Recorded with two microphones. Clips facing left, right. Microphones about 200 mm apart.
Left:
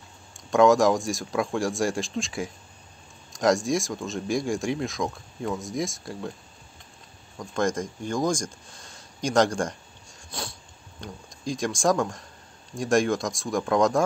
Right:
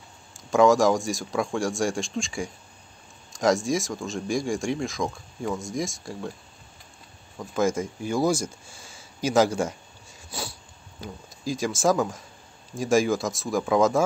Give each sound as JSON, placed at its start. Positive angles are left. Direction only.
{"t": 0.3, "sound": "speech", "side_deg": 0}
{"t": 7.3, "sound": "speech", "side_deg": -5}
{"t": 10.3, "sound": "a sound", "side_deg": -5}
{"t": 11.0, "sound": "speech", "side_deg": -5}